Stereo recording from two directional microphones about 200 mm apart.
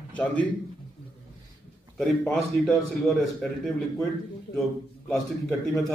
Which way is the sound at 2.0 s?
5° left (ahead or behind).